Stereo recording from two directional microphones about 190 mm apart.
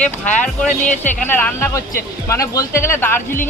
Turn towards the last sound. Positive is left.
turn(degrees=10)  # may be behind; listen again after turning